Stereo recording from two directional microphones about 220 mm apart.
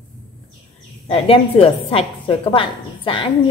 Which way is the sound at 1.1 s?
25° left (ahead or behind).